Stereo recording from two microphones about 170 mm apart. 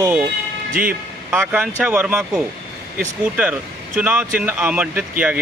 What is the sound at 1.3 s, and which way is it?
Speech, 10° right (ahead or behind).